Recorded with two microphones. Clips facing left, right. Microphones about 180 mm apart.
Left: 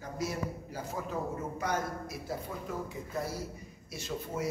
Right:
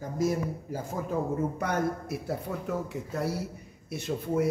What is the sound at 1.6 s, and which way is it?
Speech, 60° right (ahead or behind).